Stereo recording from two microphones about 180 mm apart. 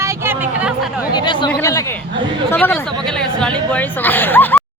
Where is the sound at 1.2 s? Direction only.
25° left (ahead or behind).